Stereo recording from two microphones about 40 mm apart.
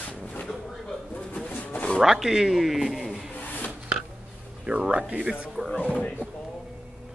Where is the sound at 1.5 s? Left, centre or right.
Left.